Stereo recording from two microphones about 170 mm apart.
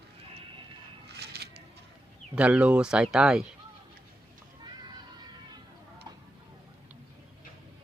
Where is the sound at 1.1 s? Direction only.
75° right (ahead or behind).